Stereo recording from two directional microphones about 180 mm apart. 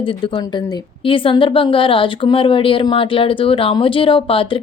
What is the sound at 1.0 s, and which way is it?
Speech, 30° left (ahead or behind).